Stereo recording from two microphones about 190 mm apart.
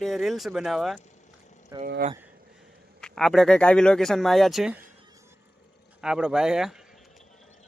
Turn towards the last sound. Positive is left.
turn(degrees=-5)  # may be behind; listen again after turning